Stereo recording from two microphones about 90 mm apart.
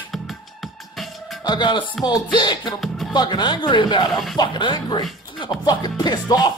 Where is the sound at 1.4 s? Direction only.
60° left (ahead or behind).